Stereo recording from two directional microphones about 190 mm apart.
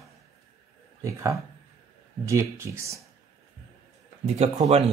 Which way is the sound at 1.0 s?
15° right (ahead or behind).